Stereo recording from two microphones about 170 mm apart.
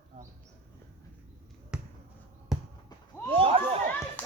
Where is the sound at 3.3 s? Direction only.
35° right (ahead or behind).